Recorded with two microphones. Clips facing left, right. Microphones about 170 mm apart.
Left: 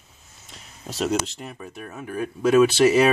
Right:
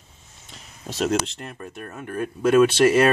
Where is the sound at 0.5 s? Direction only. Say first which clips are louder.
Right 1 dB; centre (ahead or behind).